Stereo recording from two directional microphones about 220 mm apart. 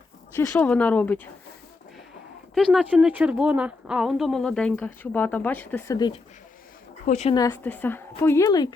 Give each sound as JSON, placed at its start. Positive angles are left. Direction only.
{"t": 0.3, "sound": "a woman's voice", "side_deg": 10}
{"t": 2.6, "sound": "a woman's voice", "side_deg": 0}
{"t": 7.0, "sound": "speech", "side_deg": 30}
{"t": 7.3, "sound": "a woman's voice", "side_deg": 10}